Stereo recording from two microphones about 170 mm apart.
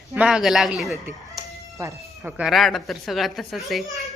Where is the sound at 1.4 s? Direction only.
20° right (ahead or behind).